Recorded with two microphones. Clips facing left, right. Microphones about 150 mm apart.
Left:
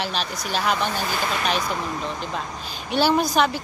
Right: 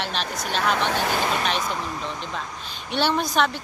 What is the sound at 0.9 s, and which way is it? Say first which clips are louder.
Speech: right 3 dB; 75° right (ahead or behind).